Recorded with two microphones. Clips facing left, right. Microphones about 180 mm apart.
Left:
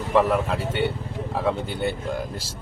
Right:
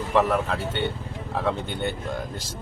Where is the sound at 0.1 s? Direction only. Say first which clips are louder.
Left 2 dB; 5° left (ahead or behind).